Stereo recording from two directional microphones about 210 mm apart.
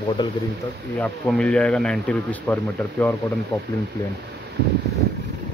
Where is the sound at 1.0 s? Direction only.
5° left (ahead or behind).